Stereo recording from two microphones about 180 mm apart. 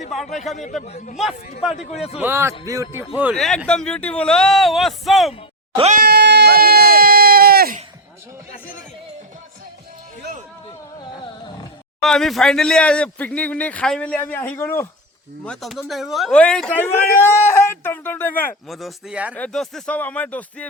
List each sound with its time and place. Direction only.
0.1 s speech: centre (ahead or behind)
0.9 s a man's voice: 40° left (ahead or behind)
2.0 s a man's voice: 5° right (ahead or behind)
3.3 s speech: centre (ahead or behind)
5.7 s a sound: 35° right (ahead or behind)
6.0 s a sound: 60° right (ahead or behind)
12.0 s speech: centre (ahead or behind)
15.4 s speech: centre (ahead or behind)
18.8 s speech: centre (ahead or behind)